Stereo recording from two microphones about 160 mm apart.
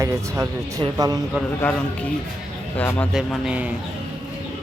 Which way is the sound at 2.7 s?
10° left (ahead or behind).